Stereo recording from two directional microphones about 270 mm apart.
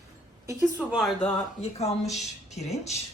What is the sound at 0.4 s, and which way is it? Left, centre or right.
Speech, centre.